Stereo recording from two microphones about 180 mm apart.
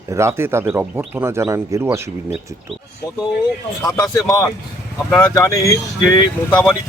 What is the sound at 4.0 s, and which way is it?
Speech, 20° left (ahead or behind).